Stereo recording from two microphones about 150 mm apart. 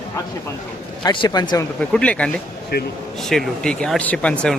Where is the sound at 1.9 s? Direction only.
5° left (ahead or behind).